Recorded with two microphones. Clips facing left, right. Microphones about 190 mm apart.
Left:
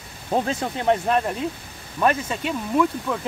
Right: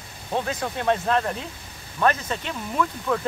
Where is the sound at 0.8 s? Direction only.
15° left (ahead or behind).